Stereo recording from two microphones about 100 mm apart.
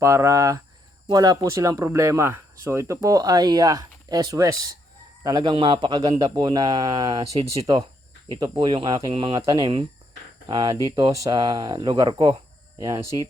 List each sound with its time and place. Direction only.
0.0 s speech: 30° right (ahead or behind); by 9.8 s 55° right (ahead or behind)
10.5 s speech: 45° right (ahead or behind)